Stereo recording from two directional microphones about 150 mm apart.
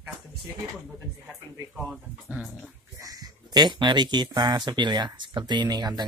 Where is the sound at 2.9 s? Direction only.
25° right (ahead or behind).